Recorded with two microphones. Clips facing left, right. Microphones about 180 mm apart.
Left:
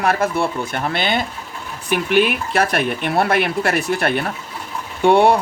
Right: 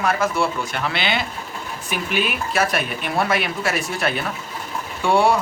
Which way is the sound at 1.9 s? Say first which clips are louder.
Left 8 dB; 60° left (ahead or behind).